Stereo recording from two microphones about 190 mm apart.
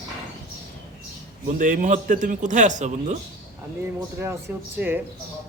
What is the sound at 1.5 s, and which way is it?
Speech, 45° right (ahead or behind).